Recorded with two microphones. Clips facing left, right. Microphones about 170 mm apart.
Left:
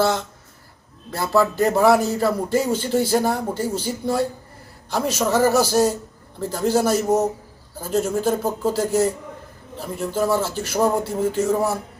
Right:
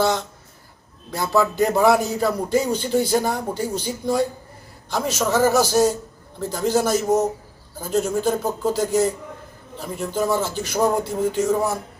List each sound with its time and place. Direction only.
1.1 s speech: centre (ahead or behind)